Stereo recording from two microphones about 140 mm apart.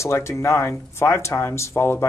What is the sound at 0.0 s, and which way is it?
Speech, 20° left (ahead or behind).